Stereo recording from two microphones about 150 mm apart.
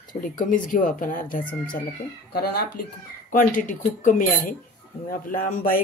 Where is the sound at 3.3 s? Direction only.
60° left (ahead or behind).